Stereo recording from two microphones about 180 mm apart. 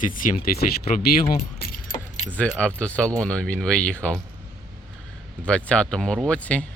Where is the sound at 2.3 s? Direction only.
5° left (ahead or behind).